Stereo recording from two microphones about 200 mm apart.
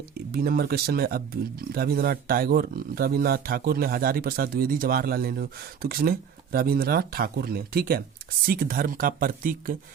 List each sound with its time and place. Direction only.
0.3 s speech: 50° right (ahead or behind)